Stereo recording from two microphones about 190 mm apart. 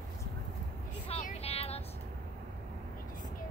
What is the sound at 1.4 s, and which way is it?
Vehicle, 30° left (ahead or behind).